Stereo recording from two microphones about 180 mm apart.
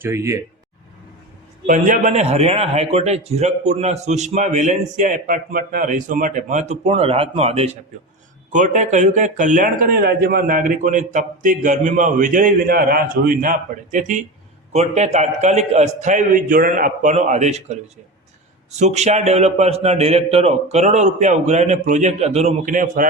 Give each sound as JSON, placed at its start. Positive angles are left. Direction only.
{"t": 0.0, "sound": "speech", "side_deg": -15}
{"t": 1.6, "sound": "a man's voice", "side_deg": -45}
{"t": 18.8, "sound": "a man's voice", "side_deg": -40}